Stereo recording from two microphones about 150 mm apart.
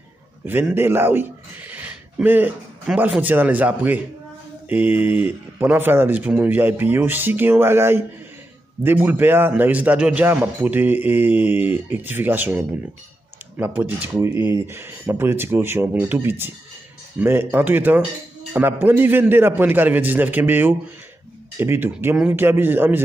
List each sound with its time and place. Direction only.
0.5 s a man's voice: 15° right (ahead or behind)